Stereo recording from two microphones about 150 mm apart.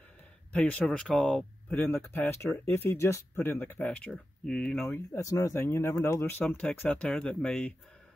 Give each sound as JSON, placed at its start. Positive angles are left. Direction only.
{"t": 0.5, "sound": "speech", "side_deg": 10}
{"t": 1.8, "sound": "speech", "side_deg": 15}